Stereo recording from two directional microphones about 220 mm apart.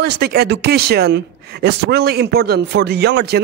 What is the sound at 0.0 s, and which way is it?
Speech, 45° right (ahead or behind).